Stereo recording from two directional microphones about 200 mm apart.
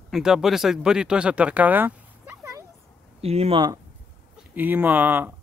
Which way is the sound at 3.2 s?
30° right (ahead or behind).